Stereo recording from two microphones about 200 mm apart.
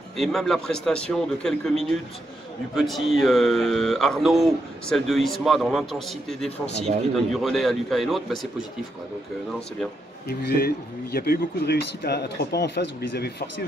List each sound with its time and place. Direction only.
0.2 s speech: centre (ahead or behind)
10.2 s speech: 55° left (ahead or behind)